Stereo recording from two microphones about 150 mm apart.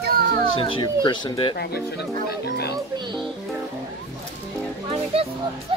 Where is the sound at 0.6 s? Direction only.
35° left (ahead or behind).